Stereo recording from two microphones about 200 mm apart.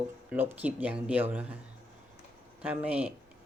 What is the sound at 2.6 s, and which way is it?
Speech, 5° right (ahead or behind).